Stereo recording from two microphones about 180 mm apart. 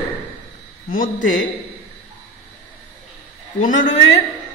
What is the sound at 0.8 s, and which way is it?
Speech, 50° left (ahead or behind).